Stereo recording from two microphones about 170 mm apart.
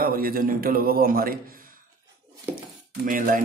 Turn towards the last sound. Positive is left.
turn(degrees=-55)  # may be behind; listen again after turning